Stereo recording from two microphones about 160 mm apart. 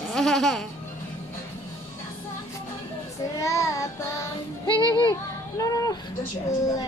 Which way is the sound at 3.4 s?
20° left (ahead or behind).